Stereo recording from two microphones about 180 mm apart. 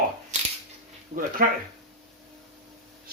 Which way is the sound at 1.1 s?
40° right (ahead or behind).